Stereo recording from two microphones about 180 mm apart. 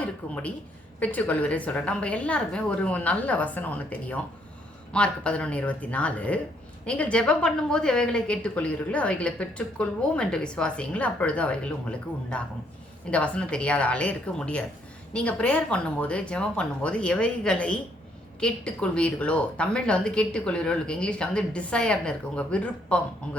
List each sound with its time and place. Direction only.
0.0 s a woman's voice: 10° left (ahead or behind)